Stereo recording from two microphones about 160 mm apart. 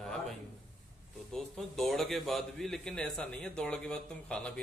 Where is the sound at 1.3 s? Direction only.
Centre (ahead or behind).